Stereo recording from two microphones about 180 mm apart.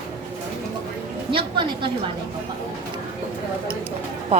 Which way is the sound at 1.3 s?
25° right (ahead or behind).